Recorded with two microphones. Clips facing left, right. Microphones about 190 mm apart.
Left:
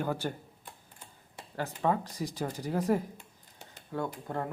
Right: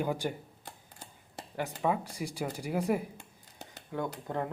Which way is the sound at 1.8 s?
10° right (ahead or behind).